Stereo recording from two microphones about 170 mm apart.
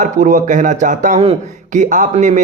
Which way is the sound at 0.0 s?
50° right (ahead or behind).